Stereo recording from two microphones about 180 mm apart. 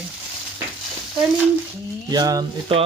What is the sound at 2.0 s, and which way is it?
Speech, 20° right (ahead or behind).